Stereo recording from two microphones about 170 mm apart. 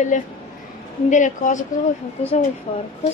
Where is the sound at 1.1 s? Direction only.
45° left (ahead or behind).